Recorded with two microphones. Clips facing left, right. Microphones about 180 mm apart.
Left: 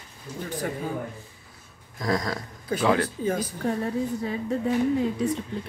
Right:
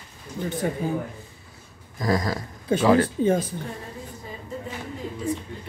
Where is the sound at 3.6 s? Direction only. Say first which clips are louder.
Left 10 dB; 75° left (ahead or behind).